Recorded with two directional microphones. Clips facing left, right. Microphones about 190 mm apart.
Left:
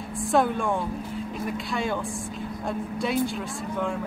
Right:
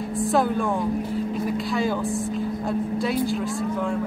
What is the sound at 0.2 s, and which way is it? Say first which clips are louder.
Speech: right 1 dB; centre (ahead or behind).